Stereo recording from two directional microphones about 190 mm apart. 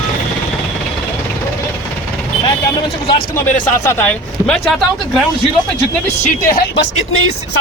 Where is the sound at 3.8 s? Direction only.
10° left (ahead or behind).